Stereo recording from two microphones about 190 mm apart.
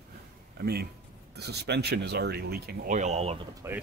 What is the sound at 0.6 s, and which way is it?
Speech, 55° right (ahead or behind).